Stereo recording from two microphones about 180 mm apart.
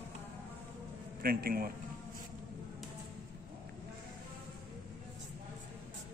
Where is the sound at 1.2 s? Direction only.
55° right (ahead or behind).